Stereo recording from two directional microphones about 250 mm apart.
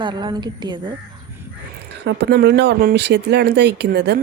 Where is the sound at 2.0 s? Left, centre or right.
Right.